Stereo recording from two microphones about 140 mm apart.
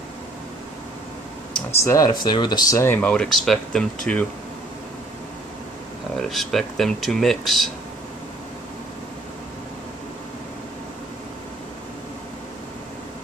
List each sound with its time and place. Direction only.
1.7 s speech: 20° left (ahead or behind)
2.1 s speech: 30° left (ahead or behind); by 4.3 s 5° left (ahead or behind)
6.2 s speech: centre (ahead or behind)